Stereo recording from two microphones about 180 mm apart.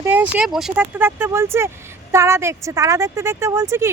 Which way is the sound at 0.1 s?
5° right (ahead or behind).